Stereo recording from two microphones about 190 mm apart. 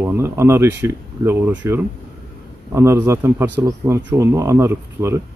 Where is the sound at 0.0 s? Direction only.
15° right (ahead or behind).